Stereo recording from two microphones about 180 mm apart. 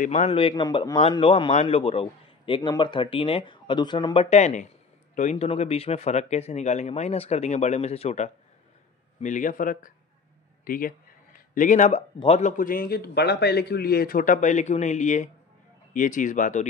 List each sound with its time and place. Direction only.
0.0 s speech: 35° left (ahead or behind)
9.2 s a man's voice: 45° left (ahead or behind)
10.6 s a sound: 50° left (ahead or behind)
12.2 s a man's voice: 35° left (ahead or behind)